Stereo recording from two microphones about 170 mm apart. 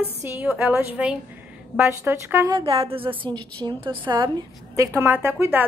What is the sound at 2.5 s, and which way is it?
A woman's voice, 35° right (ahead or behind).